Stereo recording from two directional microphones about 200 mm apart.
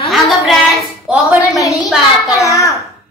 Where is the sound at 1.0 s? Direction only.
Centre (ahead or behind).